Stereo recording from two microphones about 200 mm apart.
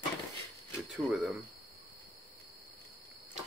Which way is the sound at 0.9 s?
Centre (ahead or behind).